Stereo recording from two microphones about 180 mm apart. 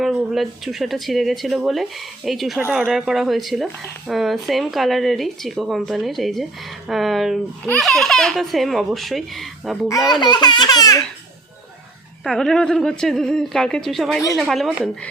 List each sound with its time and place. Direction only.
0.0 s speech: centre (ahead or behind)
10.1 s speech: 25° left (ahead or behind)
12.2 s speech: centre (ahead or behind)